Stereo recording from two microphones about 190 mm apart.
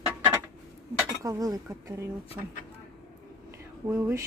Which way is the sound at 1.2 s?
20° right (ahead or behind).